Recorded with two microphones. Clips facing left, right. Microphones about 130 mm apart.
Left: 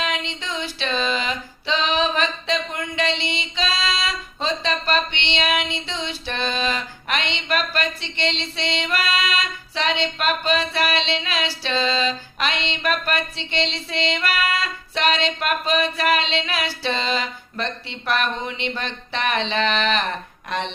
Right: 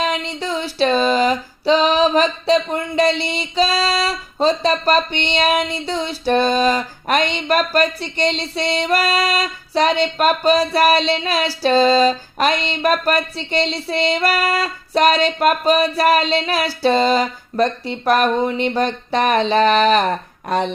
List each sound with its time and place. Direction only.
0.0 s female singing: 35° right (ahead or behind)